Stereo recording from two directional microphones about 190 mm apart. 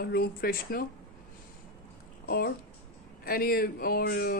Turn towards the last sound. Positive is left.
turn(degrees=55)  # may be behind; listen again after turning